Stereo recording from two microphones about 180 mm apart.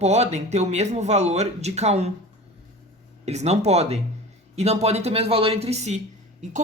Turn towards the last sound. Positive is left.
turn(degrees=-35)  # may be behind; listen again after turning